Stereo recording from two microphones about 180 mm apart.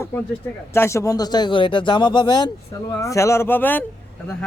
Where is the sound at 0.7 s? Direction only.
15° left (ahead or behind).